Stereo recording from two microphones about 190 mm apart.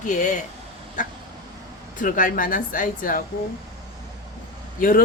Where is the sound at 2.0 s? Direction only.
45° left (ahead or behind).